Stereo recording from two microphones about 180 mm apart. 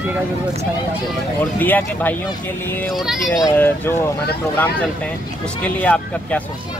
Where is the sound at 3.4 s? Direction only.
10° left (ahead or behind).